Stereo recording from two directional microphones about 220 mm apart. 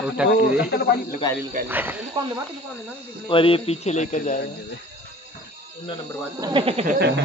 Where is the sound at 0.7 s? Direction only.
45° left (ahead or behind).